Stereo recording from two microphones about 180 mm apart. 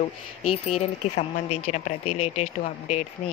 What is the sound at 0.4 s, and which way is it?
Speech, 35° left (ahead or behind).